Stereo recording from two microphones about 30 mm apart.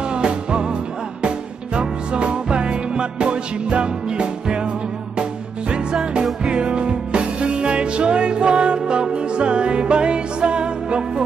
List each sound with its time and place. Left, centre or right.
0.1 s music: right
1.8 s music: right
6.4 s music: right